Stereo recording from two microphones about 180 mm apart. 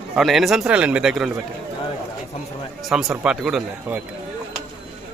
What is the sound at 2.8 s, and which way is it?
A man's voice, centre (ahead or behind).